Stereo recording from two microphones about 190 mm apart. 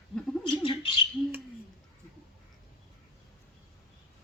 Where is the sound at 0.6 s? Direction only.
30° left (ahead or behind).